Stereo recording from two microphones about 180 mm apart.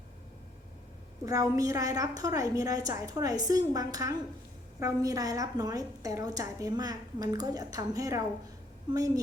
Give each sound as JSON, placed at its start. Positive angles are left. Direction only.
{"t": 1.2, "sound": "a woman's voice", "side_deg": -20}